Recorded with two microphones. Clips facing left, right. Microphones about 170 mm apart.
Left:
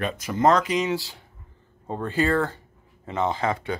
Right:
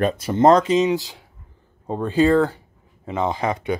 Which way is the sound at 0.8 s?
15° right (ahead or behind).